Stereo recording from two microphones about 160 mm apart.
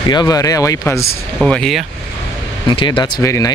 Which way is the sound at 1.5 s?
5° left (ahead or behind).